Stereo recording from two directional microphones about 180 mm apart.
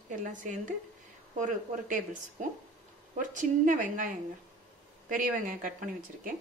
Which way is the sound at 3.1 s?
45° right (ahead or behind).